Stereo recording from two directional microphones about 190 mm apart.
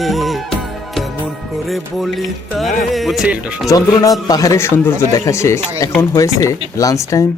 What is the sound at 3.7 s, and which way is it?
Speech, 20° left (ahead or behind).